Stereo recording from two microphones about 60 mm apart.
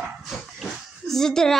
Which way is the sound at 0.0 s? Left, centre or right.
Centre.